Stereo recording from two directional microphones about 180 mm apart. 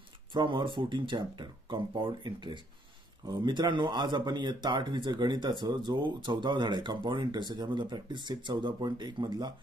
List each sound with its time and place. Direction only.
0.3 s speech: 25° right (ahead or behind)